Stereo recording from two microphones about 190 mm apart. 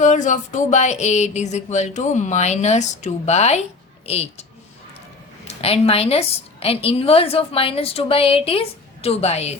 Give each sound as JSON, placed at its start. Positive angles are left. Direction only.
{"t": 0.0, "sound": "speech", "side_deg": 40}
{"t": 5.5, "sound": "speech", "side_deg": 30}